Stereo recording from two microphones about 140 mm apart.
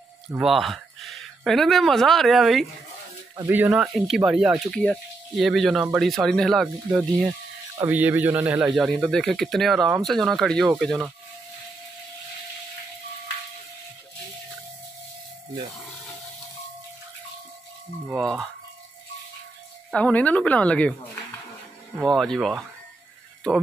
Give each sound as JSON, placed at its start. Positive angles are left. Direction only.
{"t": 0.4, "sound": "speech", "side_deg": 0}
{"t": 3.3, "sound": "speech", "side_deg": -15}
{"t": 3.7, "sound": "speech", "side_deg": 0}
{"t": 7.7, "sound": "speech", "side_deg": -15}
{"t": 18.1, "sound": "speech", "side_deg": 0}
{"t": 19.9, "sound": "speech", "side_deg": 10}